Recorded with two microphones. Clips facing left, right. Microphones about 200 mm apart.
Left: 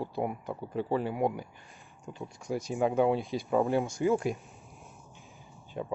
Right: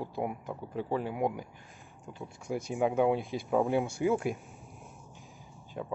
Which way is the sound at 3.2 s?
55° right (ahead or behind).